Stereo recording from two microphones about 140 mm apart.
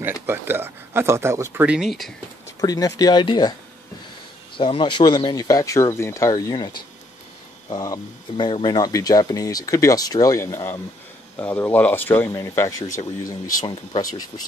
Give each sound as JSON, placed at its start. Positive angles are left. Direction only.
{"t": 0.0, "sound": "speech", "side_deg": -15}
{"t": 2.6, "sound": "speech", "side_deg": 25}
{"t": 4.6, "sound": "speech", "side_deg": 40}